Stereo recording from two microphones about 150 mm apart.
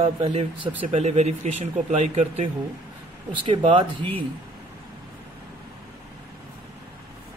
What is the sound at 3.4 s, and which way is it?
Speech, 35° right (ahead or behind).